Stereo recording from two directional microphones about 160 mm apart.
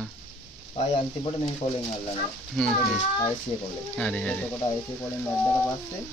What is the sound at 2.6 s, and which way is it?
Speech, 5° left (ahead or behind).